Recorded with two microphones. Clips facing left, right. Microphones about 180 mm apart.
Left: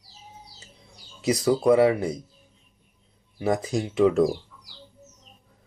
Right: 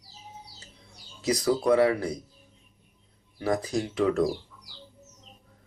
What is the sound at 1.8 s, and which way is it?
Speech, 20° left (ahead or behind).